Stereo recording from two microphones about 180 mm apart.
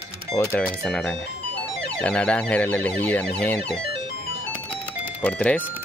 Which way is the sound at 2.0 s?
5° left (ahead or behind).